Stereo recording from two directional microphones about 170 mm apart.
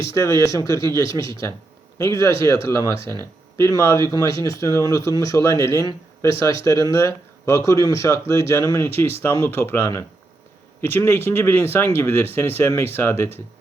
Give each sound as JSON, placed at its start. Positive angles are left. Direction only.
{"t": 0.1, "sound": "speech", "side_deg": 20}